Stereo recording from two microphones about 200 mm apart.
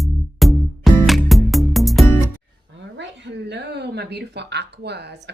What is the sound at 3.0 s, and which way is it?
Speech, 60° right (ahead or behind).